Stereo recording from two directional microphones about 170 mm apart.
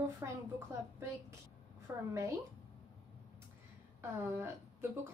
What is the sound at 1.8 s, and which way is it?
Speech, 15° right (ahead or behind).